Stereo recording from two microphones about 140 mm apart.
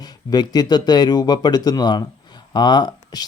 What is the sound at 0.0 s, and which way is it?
Speech, 30° left (ahead or behind).